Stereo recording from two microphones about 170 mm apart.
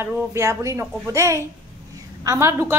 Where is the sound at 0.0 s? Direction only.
15° right (ahead or behind).